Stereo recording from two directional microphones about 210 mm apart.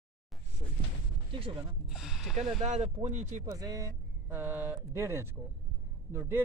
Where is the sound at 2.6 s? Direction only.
35° right (ahead or behind).